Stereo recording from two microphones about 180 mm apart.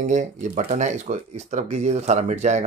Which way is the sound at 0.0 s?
45° right (ahead or behind).